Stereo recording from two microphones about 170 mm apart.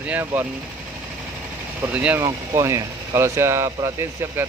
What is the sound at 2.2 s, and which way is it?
Speech, 15° right (ahead or behind).